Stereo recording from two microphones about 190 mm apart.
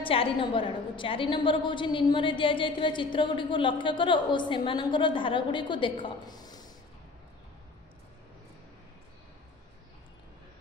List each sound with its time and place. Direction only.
0.0 s a woman's voice: 30° left (ahead or behind)